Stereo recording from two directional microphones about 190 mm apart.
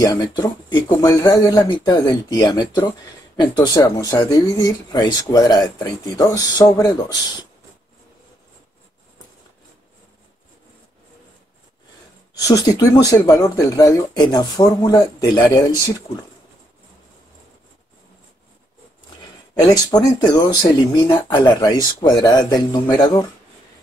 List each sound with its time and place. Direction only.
0.0 s speech: 20° left (ahead or behind)
12.4 s speech: 20° left (ahead or behind)
19.6 s speech: 20° left (ahead or behind)